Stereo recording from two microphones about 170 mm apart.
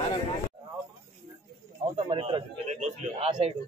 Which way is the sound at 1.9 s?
35° right (ahead or behind).